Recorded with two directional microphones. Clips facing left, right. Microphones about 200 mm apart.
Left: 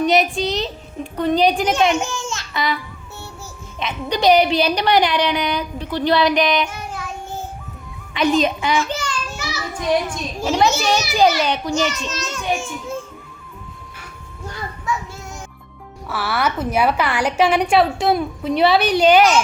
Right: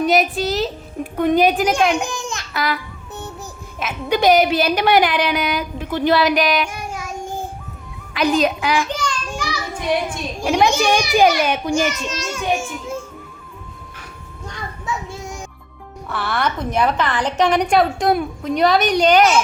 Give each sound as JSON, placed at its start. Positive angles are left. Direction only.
{"t": 0.0, "sound": "a woman's voice", "side_deg": 0}
{"t": 2.0, "sound": "babbling", "side_deg": -15}
{"t": 2.5, "sound": "speech", "side_deg": 0}
{"t": 3.8, "sound": "a woman's voice", "side_deg": -5}
{"t": 6.7, "sound": "child singing", "side_deg": -10}
{"t": 8.1, "sound": "a woman's voice", "side_deg": 0}
{"t": 9.0, "sound": "child singing", "side_deg": 10}
{"t": 10.1, "sound": "a child's voice", "side_deg": -10}
{"t": 16.0, "sound": "a woman's voice", "side_deg": 5}